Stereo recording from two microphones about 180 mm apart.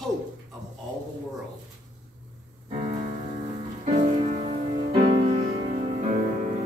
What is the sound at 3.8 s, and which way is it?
Music, 35° right (ahead or behind).